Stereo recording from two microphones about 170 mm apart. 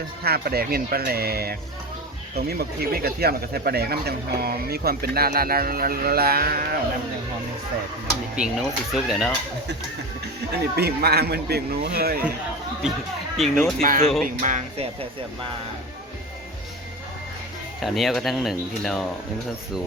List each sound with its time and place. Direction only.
0.2 s speech: 65° right (ahead or behind)
8.4 s speech: centre (ahead or behind)
10.5 s speech: 70° right (ahead or behind)
13.3 s speech: centre (ahead or behind)
14.3 s speech: 50° right (ahead or behind)
17.7 s speech: centre (ahead or behind)